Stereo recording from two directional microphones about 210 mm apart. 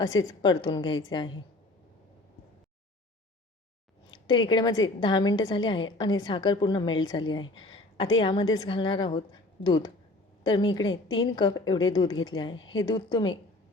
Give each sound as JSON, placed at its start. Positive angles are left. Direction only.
{"t": 0.0, "sound": "a woman's voice", "side_deg": 20}
{"t": 4.1, "sound": "a woman's voice", "side_deg": 20}